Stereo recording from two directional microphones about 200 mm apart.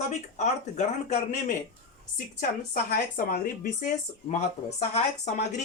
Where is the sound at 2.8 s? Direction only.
45° left (ahead or behind).